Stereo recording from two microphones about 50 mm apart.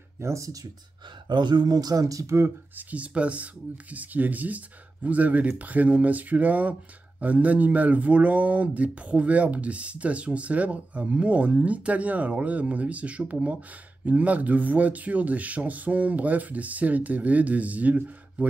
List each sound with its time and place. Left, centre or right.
0.2 s speech: right
2.2 s speech: right
2.9 s speech: right